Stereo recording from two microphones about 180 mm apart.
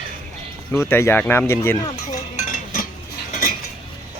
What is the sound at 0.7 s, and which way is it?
Speech, 15° left (ahead or behind).